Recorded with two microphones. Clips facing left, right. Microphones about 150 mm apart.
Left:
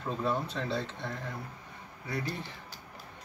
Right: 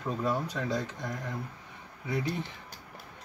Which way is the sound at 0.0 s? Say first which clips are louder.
Right 1 dB; 10° right (ahead or behind).